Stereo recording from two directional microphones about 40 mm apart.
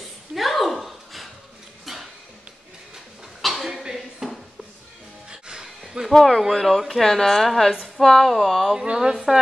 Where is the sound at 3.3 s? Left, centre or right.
Centre.